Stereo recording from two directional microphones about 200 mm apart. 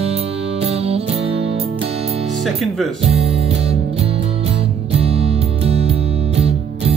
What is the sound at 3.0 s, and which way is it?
Music, 30° right (ahead or behind).